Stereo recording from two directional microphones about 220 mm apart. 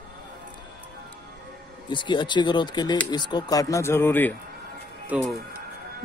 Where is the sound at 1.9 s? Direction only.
20° left (ahead or behind).